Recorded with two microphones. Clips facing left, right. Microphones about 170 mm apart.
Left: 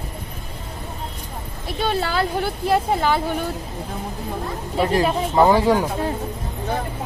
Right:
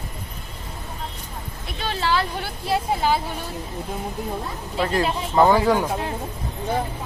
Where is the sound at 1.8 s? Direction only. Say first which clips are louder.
Left 1 dB; 50° left (ahead or behind).